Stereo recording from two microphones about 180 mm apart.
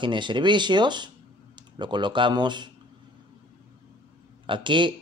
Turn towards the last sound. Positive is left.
turn(degrees=-25)  # may be behind; listen again after turning